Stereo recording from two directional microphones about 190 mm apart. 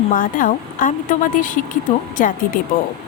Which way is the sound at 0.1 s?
45° left (ahead or behind).